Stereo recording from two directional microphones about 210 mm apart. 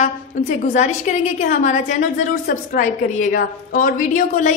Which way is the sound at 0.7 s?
35° left (ahead or behind).